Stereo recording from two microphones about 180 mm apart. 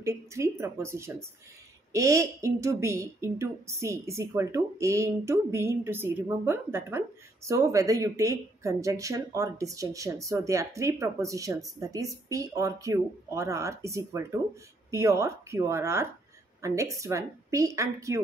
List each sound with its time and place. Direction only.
0.0 s a woman's voice: 15° right (ahead or behind)